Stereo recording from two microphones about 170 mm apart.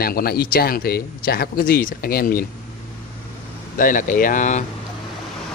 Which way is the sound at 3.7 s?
50° left (ahead or behind).